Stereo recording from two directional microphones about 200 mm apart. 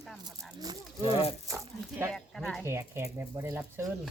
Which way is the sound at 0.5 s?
20° right (ahead or behind).